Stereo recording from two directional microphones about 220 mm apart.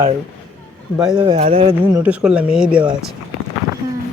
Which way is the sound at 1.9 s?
5° right (ahead or behind).